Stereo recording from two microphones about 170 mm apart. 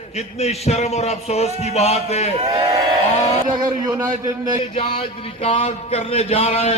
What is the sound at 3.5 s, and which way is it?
Speech, 25° right (ahead or behind).